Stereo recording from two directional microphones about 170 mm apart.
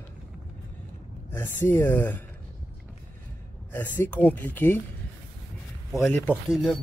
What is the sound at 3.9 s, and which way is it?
Speech, 10° left (ahead or behind).